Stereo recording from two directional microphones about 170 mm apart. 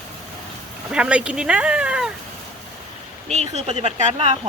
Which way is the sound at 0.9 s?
5° right (ahead or behind).